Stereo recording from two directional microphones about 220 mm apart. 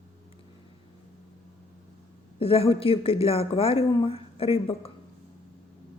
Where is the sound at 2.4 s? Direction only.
25° left (ahead or behind).